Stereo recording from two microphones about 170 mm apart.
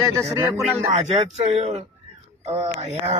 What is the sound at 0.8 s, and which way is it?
Speech, 40° right (ahead or behind).